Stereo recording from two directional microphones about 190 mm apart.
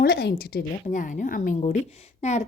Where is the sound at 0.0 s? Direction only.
55° left (ahead or behind).